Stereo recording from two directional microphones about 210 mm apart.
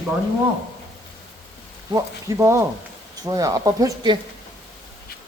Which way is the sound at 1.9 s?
15° right (ahead or behind).